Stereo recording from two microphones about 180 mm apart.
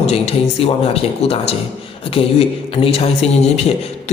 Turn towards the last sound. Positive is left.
turn(degrees=35)  # may be behind; listen again after turning